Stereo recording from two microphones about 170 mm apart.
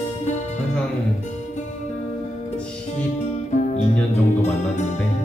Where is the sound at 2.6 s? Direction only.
5° left (ahead or behind).